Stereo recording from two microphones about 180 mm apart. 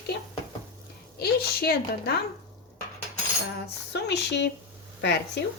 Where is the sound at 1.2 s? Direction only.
60° left (ahead or behind).